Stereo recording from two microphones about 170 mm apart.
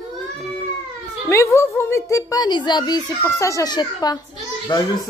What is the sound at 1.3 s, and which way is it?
A woman's voice, 15° left (ahead or behind).